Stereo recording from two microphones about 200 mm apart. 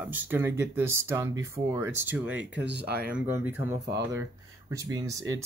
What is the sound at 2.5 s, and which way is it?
Speech, 60° right (ahead or behind).